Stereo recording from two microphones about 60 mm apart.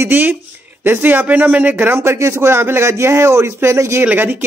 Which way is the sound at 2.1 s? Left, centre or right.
Right.